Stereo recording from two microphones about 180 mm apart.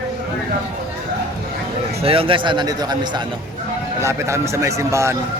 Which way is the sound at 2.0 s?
30° right (ahead or behind).